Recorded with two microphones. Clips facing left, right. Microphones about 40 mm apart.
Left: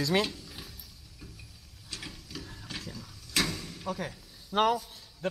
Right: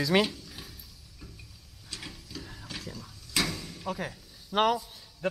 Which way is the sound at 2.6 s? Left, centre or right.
Centre.